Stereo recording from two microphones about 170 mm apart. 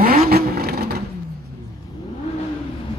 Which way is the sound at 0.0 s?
60° right (ahead or behind).